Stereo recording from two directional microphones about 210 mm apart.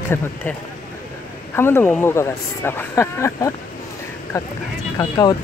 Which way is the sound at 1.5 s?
10° left (ahead or behind).